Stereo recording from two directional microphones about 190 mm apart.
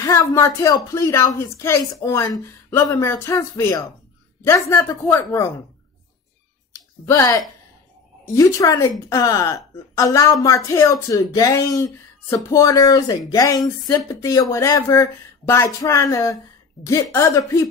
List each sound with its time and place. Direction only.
0.0 s speech: 15° left (ahead or behind)
6.7 s a sound: 15° left (ahead or behind)
8.3 s speech: 15° left (ahead or behind)